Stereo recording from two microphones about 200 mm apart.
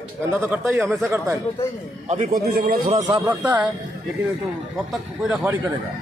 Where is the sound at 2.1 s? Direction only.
35° right (ahead or behind).